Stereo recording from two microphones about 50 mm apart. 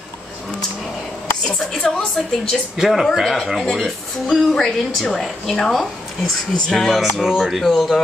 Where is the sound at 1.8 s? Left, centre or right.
Centre.